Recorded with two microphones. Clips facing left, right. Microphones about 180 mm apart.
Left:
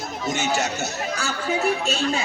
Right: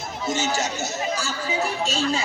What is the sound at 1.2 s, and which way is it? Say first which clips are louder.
Speech: left 2 dB; 60° left (ahead or behind).